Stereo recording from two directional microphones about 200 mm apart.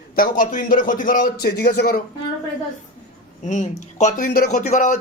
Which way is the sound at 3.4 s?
35° left (ahead or behind).